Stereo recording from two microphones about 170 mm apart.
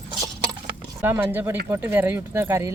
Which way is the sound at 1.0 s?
15° right (ahead or behind).